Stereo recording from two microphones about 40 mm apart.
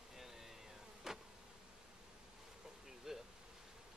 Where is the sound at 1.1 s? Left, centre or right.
Centre.